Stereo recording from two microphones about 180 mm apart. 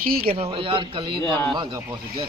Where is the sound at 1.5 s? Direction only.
25° right (ahead or behind).